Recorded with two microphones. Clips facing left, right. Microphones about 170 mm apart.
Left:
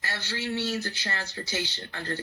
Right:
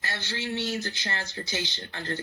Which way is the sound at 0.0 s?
20° right (ahead or behind).